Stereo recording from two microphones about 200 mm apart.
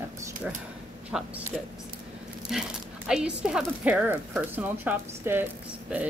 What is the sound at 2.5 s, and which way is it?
Speech, centre (ahead or behind).